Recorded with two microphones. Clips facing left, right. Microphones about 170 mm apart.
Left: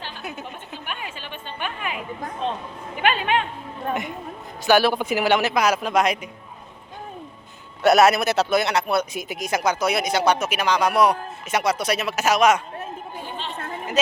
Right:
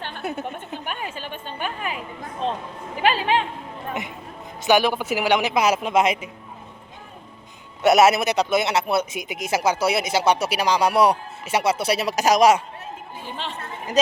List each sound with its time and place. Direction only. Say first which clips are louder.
0.0 s a sound: right 5 dB; 55° right (ahead or behind)
0.9 s a woman's voice: right 2 dB; 45° right (ahead or behind)
4.6 s speech: left 1 dB; 15° right (ahead or behind)
7.8 s a man's voice: even; 20° right (ahead or behind)